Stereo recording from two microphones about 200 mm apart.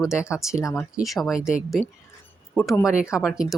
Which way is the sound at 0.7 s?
Centre (ahead or behind).